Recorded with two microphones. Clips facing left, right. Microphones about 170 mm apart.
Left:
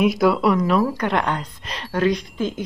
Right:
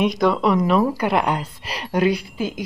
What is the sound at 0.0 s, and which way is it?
Speech, 5° left (ahead or behind).